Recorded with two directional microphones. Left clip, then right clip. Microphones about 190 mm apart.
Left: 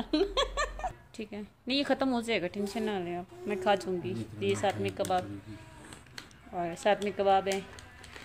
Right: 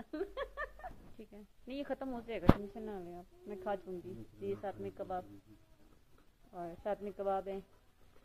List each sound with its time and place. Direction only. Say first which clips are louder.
0.1 s speech: left 13 dB; 15° left (ahead or behind)
6.5 s speech: left 12 dB; 15° left (ahead or behind)